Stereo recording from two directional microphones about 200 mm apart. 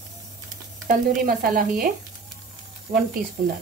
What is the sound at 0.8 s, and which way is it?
Stir, 45° right (ahead or behind).